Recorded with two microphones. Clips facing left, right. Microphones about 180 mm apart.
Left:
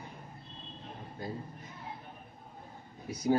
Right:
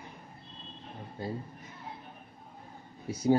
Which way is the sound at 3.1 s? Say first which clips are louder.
Right 3 dB; 25° right (ahead or behind).